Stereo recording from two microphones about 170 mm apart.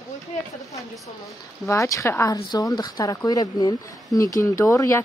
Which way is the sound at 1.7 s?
20° left (ahead or behind).